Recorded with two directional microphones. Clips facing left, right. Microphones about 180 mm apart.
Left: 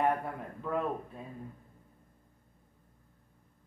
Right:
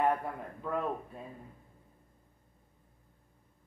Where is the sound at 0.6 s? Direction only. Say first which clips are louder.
Left 1 dB; centre (ahead or behind).